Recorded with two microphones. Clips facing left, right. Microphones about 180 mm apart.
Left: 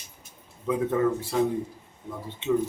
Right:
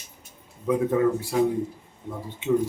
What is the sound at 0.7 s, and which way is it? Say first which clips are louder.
Speech: right 3 dB; 10° right (ahead or behind).